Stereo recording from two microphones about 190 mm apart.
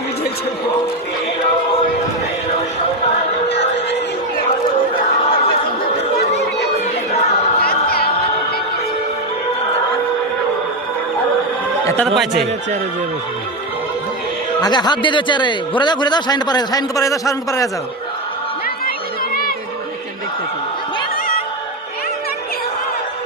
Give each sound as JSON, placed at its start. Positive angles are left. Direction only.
{"t": 7.6, "sound": "music", "side_deg": 50}
{"t": 12.0, "sound": "a man's voice", "side_deg": 0}
{"t": 14.6, "sound": "a man's voice", "side_deg": 20}
{"t": 18.9, "sound": "a sound", "side_deg": 50}